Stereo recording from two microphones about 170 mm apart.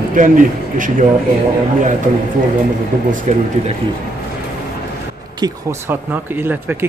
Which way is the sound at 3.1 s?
45° right (ahead or behind).